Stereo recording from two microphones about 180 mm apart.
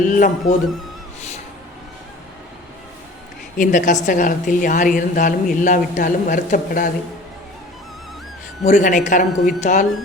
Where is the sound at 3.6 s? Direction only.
45° left (ahead or behind).